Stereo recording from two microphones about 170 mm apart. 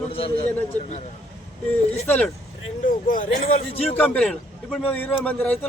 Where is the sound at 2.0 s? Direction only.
10° left (ahead or behind).